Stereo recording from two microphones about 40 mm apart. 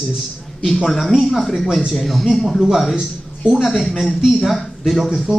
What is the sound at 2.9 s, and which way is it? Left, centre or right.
Speech, right.